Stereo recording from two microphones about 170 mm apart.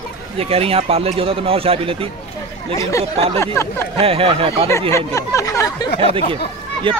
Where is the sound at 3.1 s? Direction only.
35° right (ahead or behind).